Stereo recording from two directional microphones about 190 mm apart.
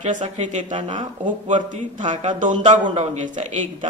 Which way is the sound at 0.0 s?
40° right (ahead or behind).